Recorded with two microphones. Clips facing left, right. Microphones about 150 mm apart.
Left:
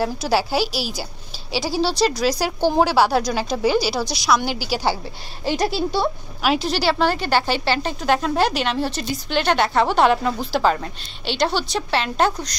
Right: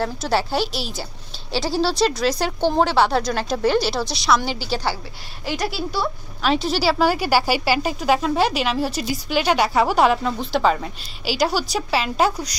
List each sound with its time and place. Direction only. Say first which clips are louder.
0.0 s a woman's voice: left 1 dB; 5° left (ahead or behind)
5.4 s speech: left 4 dB; 25° left (ahead or behind)
6.4 s a woman's voice: even; centre (ahead or behind)